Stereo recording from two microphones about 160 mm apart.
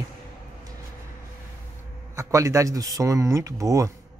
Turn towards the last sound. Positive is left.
turn(degrees=-20)  # may be behind; listen again after turning